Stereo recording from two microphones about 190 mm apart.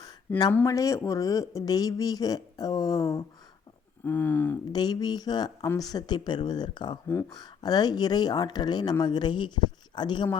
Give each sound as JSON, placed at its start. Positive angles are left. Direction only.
{"t": 0.5, "sound": "speech", "side_deg": 15}
{"t": 4.7, "sound": "speech", "side_deg": 20}